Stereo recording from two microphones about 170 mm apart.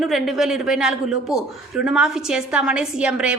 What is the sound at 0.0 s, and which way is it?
A man's voice, centre (ahead or behind).